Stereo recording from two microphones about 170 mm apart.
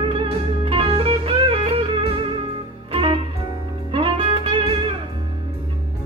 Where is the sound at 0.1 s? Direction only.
35° right (ahead or behind).